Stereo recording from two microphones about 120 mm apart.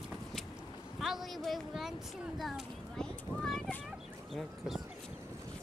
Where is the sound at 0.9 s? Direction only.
Centre (ahead or behind).